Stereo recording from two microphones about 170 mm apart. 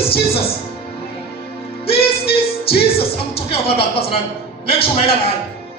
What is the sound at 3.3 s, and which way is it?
Speech, 35° left (ahead or behind).